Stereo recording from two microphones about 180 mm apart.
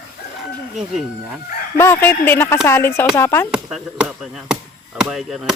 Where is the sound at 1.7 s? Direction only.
15° left (ahead or behind).